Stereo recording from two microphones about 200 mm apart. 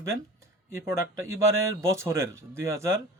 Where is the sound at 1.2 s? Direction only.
90° right.